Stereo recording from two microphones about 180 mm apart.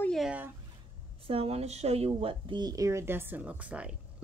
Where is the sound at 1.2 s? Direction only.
30° right (ahead or behind).